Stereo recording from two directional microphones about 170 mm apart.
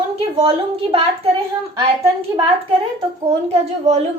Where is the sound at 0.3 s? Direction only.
35° right (ahead or behind).